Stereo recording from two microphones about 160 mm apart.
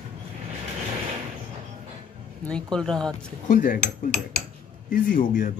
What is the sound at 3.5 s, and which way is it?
Speech, 55° left (ahead or behind).